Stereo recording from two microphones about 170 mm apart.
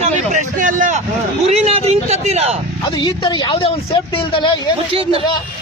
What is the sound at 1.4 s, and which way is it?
A man's voice, 35° right (ahead or behind).